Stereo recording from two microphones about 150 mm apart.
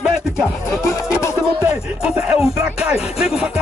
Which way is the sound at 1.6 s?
5° right (ahead or behind).